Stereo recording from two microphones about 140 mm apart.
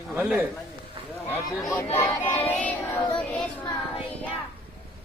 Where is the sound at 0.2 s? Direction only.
15° right (ahead or behind).